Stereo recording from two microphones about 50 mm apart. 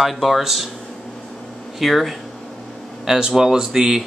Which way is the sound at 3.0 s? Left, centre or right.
Centre.